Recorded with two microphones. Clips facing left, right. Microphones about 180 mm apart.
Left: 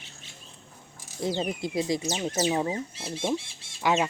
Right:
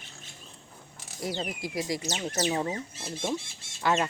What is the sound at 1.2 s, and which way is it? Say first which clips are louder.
Speech: left 5 dB; 25° left (ahead or behind).